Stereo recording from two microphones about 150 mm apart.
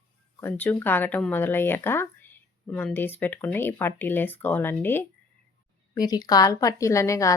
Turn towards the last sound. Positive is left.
turn(degrees=20)  # may be behind; listen again after turning